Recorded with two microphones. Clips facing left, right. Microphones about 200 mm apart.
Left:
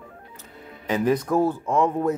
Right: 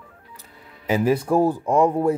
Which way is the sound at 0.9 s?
10° right (ahead or behind).